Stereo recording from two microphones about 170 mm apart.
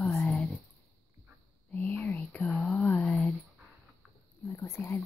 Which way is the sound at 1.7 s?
5° left (ahead or behind).